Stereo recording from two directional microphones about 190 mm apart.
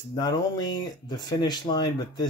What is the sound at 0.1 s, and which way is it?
Speech, 20° left (ahead or behind).